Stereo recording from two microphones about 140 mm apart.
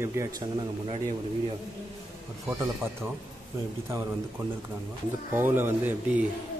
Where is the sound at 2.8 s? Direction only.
15° right (ahead or behind).